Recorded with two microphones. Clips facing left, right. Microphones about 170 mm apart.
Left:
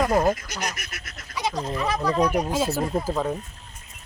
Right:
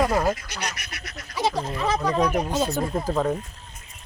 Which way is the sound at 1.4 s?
30° right (ahead or behind).